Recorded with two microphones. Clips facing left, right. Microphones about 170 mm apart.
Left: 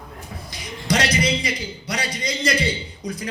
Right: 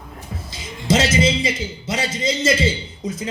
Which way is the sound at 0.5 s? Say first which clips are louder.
Right 4 dB; 25° right (ahead or behind).